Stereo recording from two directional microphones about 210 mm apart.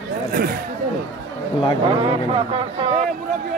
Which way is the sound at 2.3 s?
25° right (ahead or behind).